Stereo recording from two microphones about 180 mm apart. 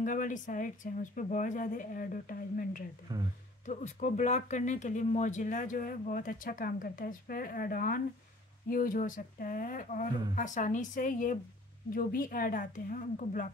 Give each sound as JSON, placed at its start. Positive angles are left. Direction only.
{"t": 0.0, "sound": "speech", "side_deg": 45}
{"t": 3.1, "sound": "speech", "side_deg": -20}
{"t": 3.6, "sound": "speech", "side_deg": 40}